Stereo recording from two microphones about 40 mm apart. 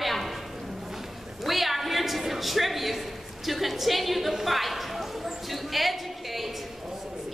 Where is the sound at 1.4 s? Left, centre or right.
Centre.